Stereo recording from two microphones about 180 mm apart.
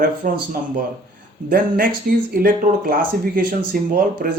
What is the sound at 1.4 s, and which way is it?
Speech, 55° right (ahead or behind).